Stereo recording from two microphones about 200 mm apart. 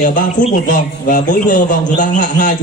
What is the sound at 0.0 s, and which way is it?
A man's voice, 40° left (ahead or behind).